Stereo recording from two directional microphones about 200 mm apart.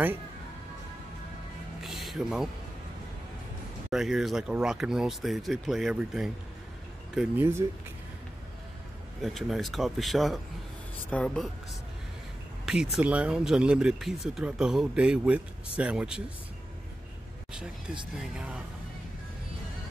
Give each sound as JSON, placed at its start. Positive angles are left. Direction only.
{"t": 1.8, "sound": "music", "side_deg": 0}
{"t": 3.9, "sound": "speech", "side_deg": 0}
{"t": 9.2, "sound": "speech", "side_deg": 0}
{"t": 12.6, "sound": "speech", "side_deg": 0}
{"t": 18.1, "sound": "speech", "side_deg": -5}